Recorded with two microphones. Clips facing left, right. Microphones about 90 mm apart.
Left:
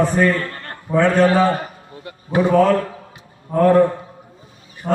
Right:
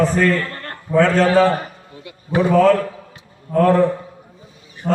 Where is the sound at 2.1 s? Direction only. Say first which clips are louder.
Left 4 dB; 40° left (ahead or behind).